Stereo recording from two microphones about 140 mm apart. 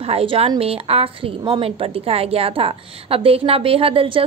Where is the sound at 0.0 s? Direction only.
45° right (ahead or behind).